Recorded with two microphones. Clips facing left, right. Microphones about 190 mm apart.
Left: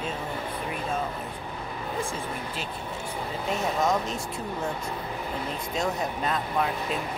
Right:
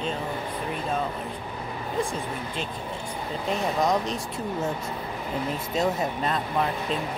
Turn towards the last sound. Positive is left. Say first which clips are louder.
# right 2 dB
turn(degrees=0)  # may be behind; listen again after turning